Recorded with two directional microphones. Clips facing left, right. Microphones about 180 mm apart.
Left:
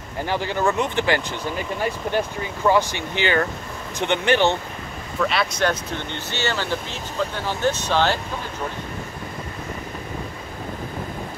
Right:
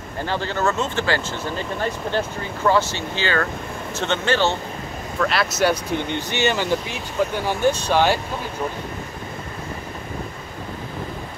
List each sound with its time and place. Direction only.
0.2 s speech: 15° left (ahead or behind)
5.2 s speech: centre (ahead or behind)